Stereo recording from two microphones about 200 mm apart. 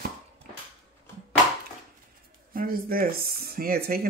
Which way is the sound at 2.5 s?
45° right (ahead or behind).